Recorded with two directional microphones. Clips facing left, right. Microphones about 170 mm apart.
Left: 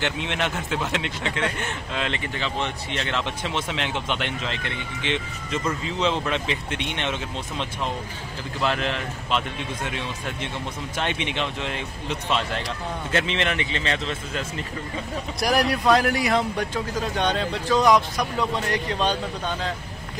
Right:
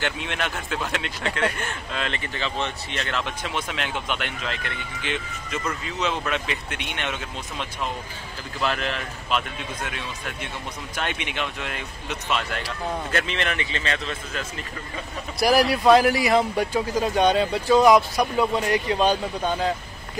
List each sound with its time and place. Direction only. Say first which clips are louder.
0.0 s a man's voice: left 2 dB; 20° left (ahead or behind)
15.4 s speech: right 3 dB; 5° right (ahead or behind)